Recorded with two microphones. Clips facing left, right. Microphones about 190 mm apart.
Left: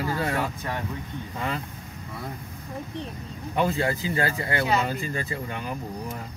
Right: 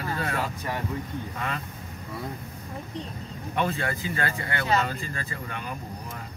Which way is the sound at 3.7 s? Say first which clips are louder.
Left 4 dB; 25° left (ahead or behind).